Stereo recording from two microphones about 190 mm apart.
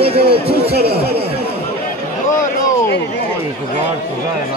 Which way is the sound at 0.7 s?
55° right (ahead or behind).